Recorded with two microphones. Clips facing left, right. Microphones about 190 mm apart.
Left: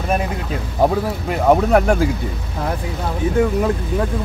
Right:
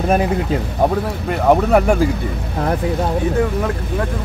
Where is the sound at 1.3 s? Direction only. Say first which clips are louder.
Right 1 dB; centre (ahead or behind).